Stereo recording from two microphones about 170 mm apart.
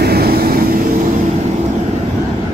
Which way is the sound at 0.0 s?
65° right (ahead or behind).